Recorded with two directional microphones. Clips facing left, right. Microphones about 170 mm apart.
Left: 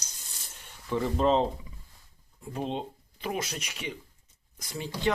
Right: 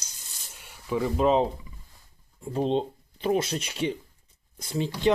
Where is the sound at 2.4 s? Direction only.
30° right (ahead or behind).